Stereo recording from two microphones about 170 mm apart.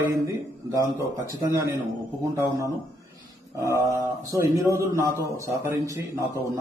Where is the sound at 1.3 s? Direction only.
20° right (ahead or behind).